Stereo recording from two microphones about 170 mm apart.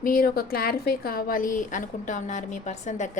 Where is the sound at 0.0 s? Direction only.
55° left (ahead or behind).